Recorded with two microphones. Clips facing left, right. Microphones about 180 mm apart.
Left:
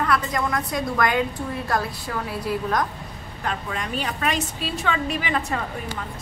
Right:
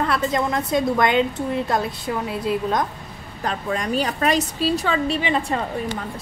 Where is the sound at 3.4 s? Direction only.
40° right (ahead or behind).